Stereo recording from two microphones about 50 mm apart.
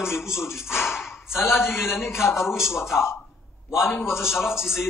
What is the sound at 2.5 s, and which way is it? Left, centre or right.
A man's voice, centre.